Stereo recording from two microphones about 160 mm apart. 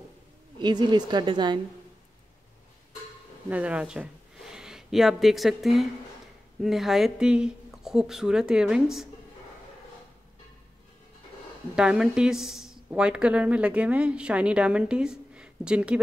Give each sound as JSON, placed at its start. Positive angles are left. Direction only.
{"t": 0.6, "sound": "a woman's voice", "side_deg": -30}
{"t": 3.4, "sound": "speech", "side_deg": -10}
{"t": 11.7, "sound": "speech", "side_deg": -5}